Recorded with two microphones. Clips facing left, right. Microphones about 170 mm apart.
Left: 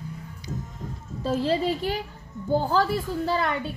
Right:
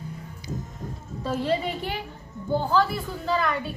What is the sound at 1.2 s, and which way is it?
A woman's voice, 30° left (ahead or behind).